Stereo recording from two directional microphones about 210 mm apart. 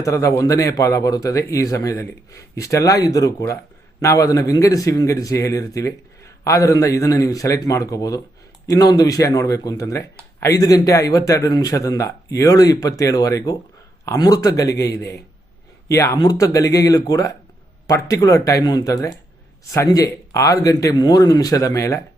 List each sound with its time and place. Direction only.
0.0 s speech: 15° left (ahead or behind)